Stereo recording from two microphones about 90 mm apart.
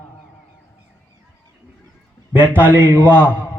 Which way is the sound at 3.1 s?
15° left (ahead or behind).